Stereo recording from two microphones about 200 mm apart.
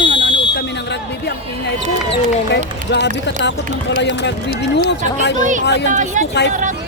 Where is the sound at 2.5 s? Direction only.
60° left (ahead or behind).